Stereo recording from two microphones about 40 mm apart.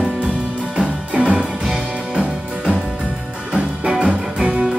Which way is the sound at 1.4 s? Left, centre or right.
Centre.